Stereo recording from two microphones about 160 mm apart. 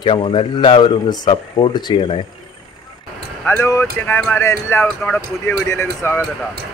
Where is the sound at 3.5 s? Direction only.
15° left (ahead or behind).